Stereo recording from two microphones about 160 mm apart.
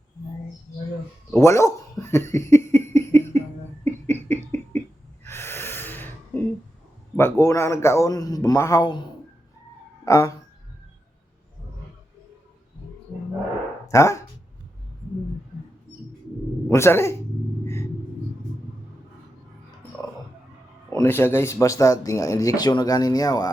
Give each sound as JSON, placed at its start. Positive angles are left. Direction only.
{"t": 1.3, "sound": "a sound", "side_deg": 20}
{"t": 5.2, "sound": "snort", "side_deg": 15}
{"t": 7.2, "sound": "speech", "side_deg": 15}
{"t": 10.0, "sound": "speech", "side_deg": 20}
{"t": 13.8, "sound": "speech", "side_deg": 20}
{"t": 16.6, "sound": "speech", "side_deg": 15}
{"t": 20.9, "sound": "speech", "side_deg": 15}